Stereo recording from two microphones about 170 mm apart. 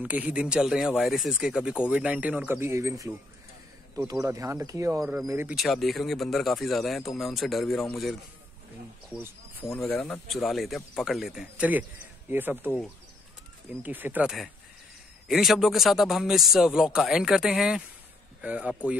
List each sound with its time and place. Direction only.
0.0 s speech: 10° right (ahead or behind)
5.6 s speech: centre (ahead or behind)
9.8 s speech: 5° left (ahead or behind); by 12.7 s 10° right (ahead or behind)
13.8 s speech: 10° right (ahead or behind)